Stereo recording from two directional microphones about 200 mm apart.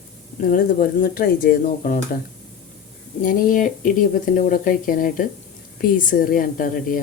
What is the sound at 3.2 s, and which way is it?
Speech, 45° left (ahead or behind).